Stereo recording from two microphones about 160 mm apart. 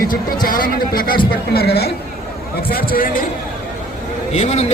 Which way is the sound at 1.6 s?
75° left (ahead or behind).